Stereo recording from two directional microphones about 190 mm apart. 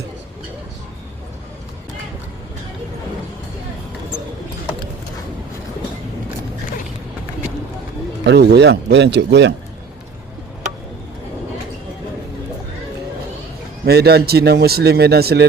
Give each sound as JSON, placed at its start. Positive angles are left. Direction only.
{"t": 8.2, "sound": "speech", "side_deg": -60}
{"t": 13.8, "sound": "speech", "side_deg": -60}